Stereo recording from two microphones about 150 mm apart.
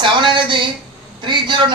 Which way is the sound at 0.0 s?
35° right (ahead or behind).